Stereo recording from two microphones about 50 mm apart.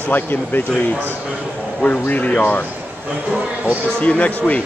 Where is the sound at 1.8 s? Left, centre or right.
Left.